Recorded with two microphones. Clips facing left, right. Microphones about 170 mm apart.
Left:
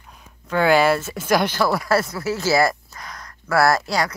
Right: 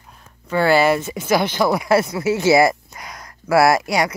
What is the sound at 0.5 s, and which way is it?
Speech, 5° right (ahead or behind).